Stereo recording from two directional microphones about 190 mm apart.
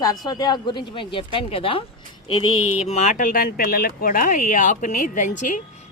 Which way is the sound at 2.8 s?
35° left (ahead or behind).